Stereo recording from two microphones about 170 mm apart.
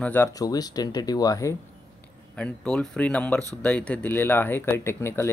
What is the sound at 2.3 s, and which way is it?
Speech, 5° left (ahead or behind).